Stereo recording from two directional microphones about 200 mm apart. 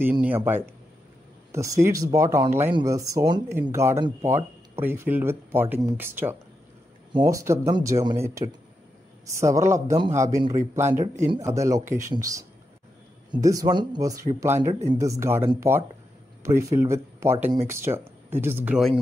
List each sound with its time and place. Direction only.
0.0 s speech: 10° right (ahead or behind)